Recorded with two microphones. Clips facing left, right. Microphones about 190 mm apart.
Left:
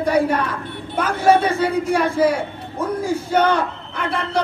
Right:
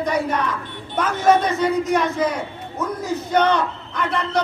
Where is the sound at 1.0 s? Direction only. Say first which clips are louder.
Left 1 dB; 10° left (ahead or behind).